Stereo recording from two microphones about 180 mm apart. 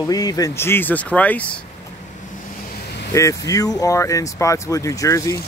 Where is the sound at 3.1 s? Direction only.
20° left (ahead or behind).